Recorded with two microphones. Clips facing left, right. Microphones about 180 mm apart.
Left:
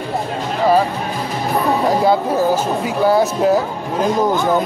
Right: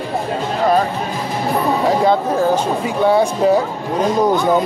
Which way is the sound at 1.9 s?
5° left (ahead or behind).